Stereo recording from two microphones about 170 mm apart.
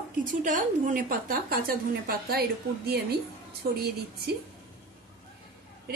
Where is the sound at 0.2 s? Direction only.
50° right (ahead or behind).